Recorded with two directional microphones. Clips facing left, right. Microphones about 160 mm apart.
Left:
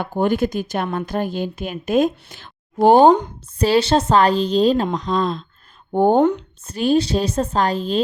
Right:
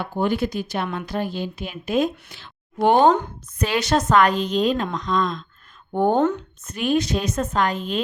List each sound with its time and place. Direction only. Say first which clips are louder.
0.0 s a woman's voice: left 4 dB; 50° left (ahead or behind)
2.7 s speech: left 5 dB; 35° left (ahead or behind)
6.1 s speech: left 4 dB; 15° left (ahead or behind)
6.7 s speech: left 4 dB; 35° left (ahead or behind)